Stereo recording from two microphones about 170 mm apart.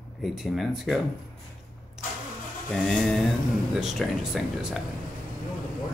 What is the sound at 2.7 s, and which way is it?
Speech, 5° left (ahead or behind).